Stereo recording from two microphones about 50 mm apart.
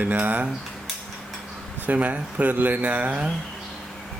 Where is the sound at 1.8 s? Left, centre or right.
Right.